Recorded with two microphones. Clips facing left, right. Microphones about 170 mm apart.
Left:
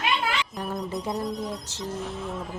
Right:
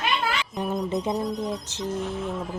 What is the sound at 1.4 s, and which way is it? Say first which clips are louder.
Speech: right 3 dB; 20° right (ahead or behind).